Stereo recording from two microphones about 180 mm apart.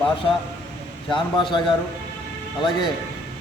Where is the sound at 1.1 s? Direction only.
25° left (ahead or behind).